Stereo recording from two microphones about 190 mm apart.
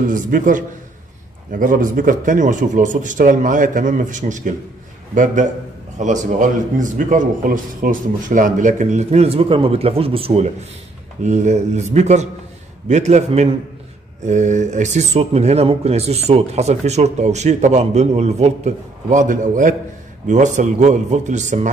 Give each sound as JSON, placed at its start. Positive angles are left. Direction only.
{"t": 0.0, "sound": "a man's voice", "side_deg": -45}